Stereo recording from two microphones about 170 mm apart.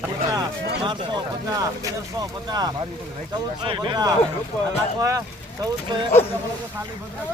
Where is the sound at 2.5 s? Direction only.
25° right (ahead or behind).